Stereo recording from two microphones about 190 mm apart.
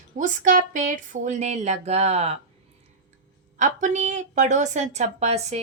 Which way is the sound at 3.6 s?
40° right (ahead or behind).